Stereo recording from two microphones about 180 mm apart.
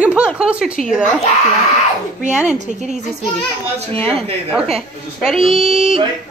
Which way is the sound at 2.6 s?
40° right (ahead or behind).